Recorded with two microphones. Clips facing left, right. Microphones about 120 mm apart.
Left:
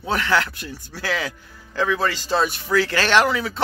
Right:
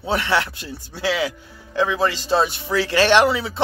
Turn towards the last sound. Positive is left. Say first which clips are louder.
# right 2 dB
turn(degrees=-25)  # may be behind; listen again after turning